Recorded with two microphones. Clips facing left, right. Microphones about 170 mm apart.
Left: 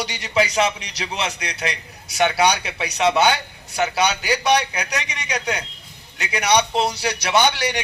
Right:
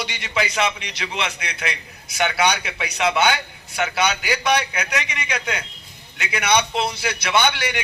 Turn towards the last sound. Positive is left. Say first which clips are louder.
# left 2 dB
turn(degrees=40)  # may be behind; listen again after turning